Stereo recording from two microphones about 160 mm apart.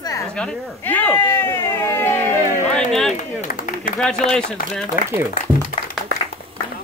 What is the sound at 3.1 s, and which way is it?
Clapping, 55° left (ahead or behind).